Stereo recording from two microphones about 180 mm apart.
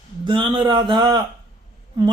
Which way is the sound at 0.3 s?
25° right (ahead or behind).